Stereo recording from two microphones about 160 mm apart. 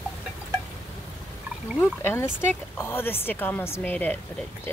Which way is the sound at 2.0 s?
15° left (ahead or behind).